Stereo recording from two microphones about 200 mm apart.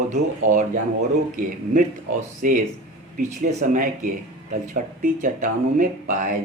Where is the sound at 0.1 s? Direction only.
40° right (ahead or behind).